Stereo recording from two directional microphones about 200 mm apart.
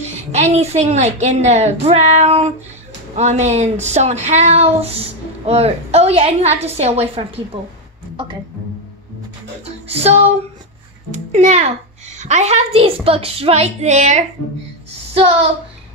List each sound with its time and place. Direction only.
0.0 s speech: 35° right (ahead or behind)
9.8 s a sound: 30° right (ahead or behind)
11.3 s speech: 35° right (ahead or behind)